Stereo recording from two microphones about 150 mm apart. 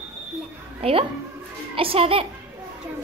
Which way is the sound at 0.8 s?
40° right (ahead or behind).